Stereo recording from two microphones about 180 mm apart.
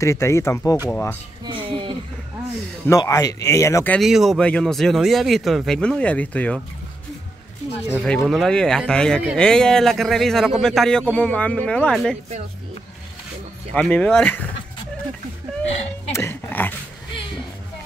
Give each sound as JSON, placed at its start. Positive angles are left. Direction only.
{"t": 0.0, "sound": "speech", "side_deg": 15}
{"t": 1.4, "sound": "a sound", "side_deg": -30}
{"t": 2.9, "sound": "speech", "side_deg": 20}
{"t": 4.0, "sound": "speech", "side_deg": 0}
{"t": 7.9, "sound": "speech", "side_deg": 5}
{"t": 13.7, "sound": "speech", "side_deg": 10}
{"t": 16.1, "sound": "a sound", "side_deg": 15}